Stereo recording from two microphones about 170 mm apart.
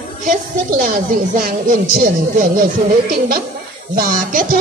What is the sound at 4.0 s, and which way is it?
Speech, 55° right (ahead or behind).